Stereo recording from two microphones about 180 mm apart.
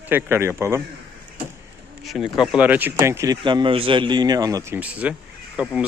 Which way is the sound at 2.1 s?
Centre (ahead or behind).